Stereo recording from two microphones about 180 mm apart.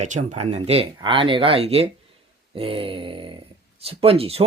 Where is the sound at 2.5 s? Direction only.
30° right (ahead or behind).